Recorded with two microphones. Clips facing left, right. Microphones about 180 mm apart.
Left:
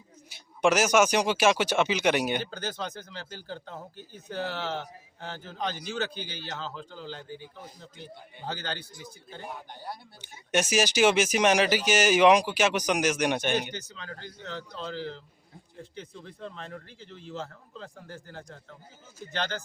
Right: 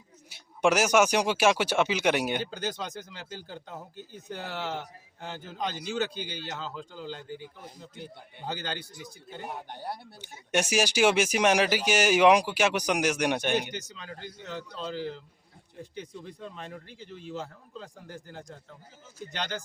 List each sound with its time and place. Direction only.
0.3 s speech: 10° right (ahead or behind)
9.5 s speech: 65° right (ahead or behind)
10.2 s speech: 10° right (ahead or behind)